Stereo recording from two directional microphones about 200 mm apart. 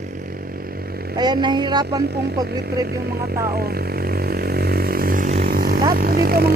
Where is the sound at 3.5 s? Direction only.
50° right (ahead or behind).